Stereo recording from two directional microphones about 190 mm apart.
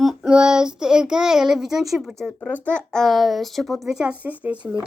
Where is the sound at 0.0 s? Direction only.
5° right (ahead or behind).